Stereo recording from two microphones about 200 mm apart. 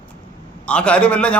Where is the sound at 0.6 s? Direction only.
5° left (ahead or behind).